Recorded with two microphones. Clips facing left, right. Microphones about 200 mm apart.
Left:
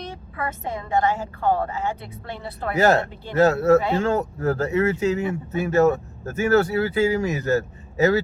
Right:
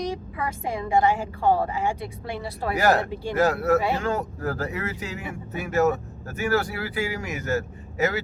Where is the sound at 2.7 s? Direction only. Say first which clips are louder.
Left 3 dB; 25° left (ahead or behind).